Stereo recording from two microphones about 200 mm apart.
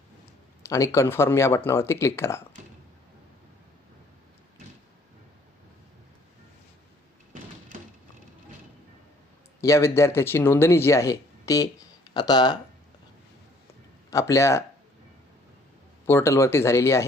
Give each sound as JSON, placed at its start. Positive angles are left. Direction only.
{"t": 0.6, "sound": "speech", "side_deg": 15}
{"t": 9.6, "sound": "speech", "side_deg": 15}
{"t": 14.1, "sound": "speech", "side_deg": 15}
{"t": 16.0, "sound": "speech", "side_deg": 15}